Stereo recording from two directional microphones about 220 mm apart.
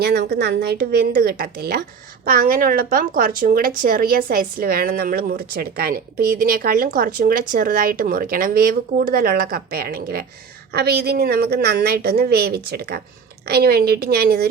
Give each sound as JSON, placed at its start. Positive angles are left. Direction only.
{"t": 0.0, "sound": "a woman's voice", "side_deg": -45}